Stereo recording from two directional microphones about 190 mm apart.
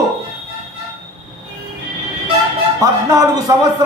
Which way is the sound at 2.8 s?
20° right (ahead or behind).